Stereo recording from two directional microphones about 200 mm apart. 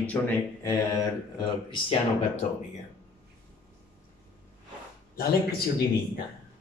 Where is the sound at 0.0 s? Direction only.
10° left (ahead or behind).